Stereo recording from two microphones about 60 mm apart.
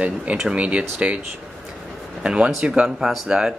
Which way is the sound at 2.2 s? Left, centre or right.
Centre.